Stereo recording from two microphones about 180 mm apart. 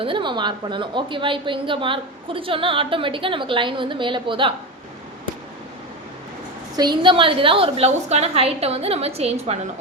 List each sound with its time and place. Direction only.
0.0 s a woman's voice: 25° right (ahead or behind)
6.7 s a woman's voice: 25° right (ahead or behind)